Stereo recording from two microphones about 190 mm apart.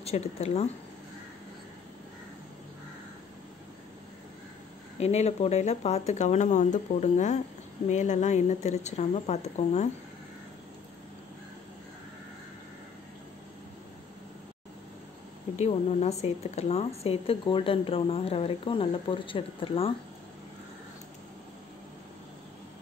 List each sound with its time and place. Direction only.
0.0 s speech: 35° left (ahead or behind)
4.9 s speech: 35° left (ahead or behind)
15.5 s speech: 35° left (ahead or behind)